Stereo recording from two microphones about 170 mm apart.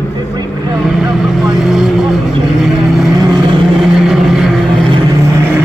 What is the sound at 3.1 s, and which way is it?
Vehicle, 25° right (ahead or behind).